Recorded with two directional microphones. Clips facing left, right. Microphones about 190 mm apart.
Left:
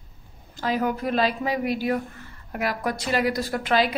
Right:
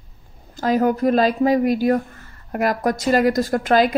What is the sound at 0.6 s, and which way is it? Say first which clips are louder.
A woman's voice: right 7 dB; 45° right (ahead or behind).